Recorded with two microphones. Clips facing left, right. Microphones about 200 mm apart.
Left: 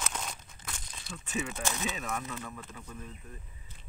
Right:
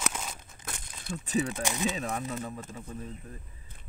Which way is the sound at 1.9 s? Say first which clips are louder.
Right 4 dB; 35° right (ahead or behind).